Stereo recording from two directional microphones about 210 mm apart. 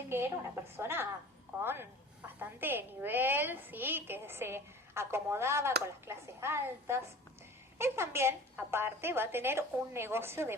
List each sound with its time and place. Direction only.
0.1 s a woman's voice: 10° right (ahead or behind)